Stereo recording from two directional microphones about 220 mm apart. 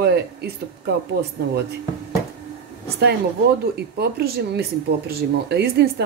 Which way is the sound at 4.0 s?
45° right (ahead or behind).